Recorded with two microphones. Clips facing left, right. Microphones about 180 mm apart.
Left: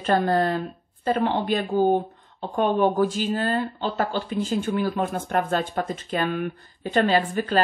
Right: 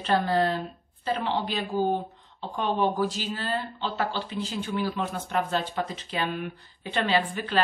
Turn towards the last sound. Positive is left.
turn(degrees=45)  # may be behind; listen again after turning